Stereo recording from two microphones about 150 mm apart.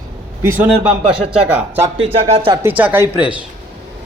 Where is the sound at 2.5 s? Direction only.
15° right (ahead or behind).